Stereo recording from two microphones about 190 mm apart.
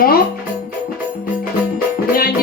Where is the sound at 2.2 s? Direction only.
50° left (ahead or behind).